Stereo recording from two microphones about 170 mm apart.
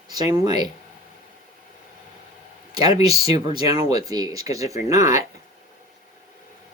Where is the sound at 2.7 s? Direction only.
25° right (ahead or behind).